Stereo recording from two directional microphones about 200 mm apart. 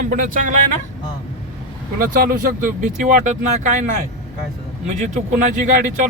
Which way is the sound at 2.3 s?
40° right (ahead or behind).